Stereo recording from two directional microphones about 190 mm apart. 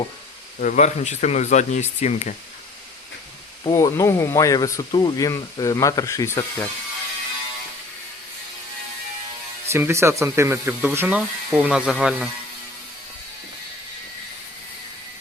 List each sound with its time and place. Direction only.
0.6 s speech: 40° left (ahead or behind)
3.6 s speech: 20° left (ahead or behind)
9.6 s speech: 15° right (ahead or behind)